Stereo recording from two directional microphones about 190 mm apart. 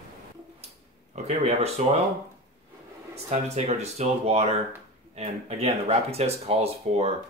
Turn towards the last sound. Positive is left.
turn(degrees=-30)  # may be behind; listen again after turning